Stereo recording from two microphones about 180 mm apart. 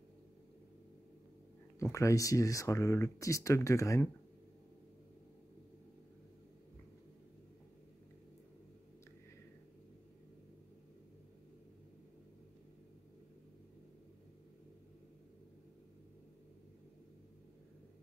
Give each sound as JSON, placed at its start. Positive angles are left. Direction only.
{"t": 1.8, "sound": "speech", "side_deg": 15}